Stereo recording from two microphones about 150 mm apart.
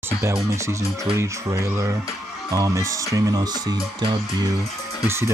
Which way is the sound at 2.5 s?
25° right (ahead or behind).